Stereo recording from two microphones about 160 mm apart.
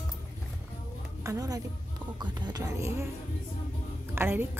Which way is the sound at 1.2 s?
20° right (ahead or behind).